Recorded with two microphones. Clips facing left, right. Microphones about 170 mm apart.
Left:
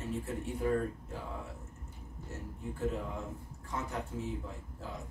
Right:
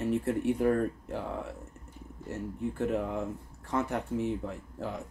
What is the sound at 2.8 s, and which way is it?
Speech, 65° right (ahead or behind).